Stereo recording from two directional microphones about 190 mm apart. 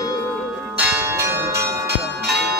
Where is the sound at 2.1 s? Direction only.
60° right (ahead or behind).